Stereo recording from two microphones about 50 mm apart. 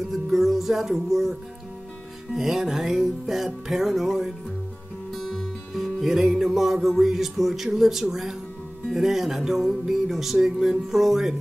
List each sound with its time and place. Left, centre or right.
0.1 s music: centre
2.3 s music: centre